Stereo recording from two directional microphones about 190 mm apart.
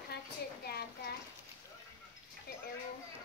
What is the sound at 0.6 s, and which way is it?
Speech, 55° left (ahead or behind).